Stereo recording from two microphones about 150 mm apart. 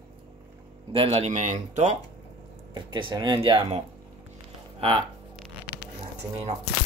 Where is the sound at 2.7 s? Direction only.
30° right (ahead or behind).